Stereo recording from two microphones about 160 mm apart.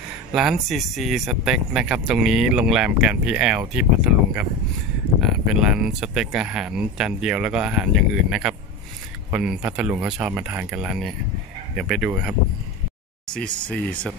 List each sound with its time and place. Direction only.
0.3 s speech: 5° right (ahead or behind)
5.5 s speech: 5° right (ahead or behind)
13.3 s speech: 5° left (ahead or behind)